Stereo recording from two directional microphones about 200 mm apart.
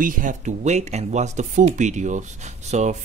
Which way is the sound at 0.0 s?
40° right (ahead or behind).